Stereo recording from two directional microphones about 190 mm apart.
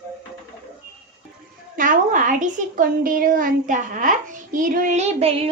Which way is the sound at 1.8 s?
45° right (ahead or behind).